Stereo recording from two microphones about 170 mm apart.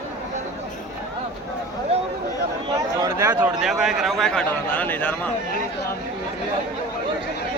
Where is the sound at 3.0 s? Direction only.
15° right (ahead or behind).